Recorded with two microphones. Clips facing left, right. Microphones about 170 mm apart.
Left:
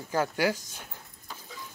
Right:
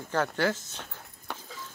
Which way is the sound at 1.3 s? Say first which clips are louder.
Right 5 dB; 65° right (ahead or behind).